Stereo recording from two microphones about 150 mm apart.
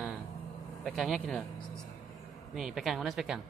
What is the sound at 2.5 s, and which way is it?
Speech, centre (ahead or behind).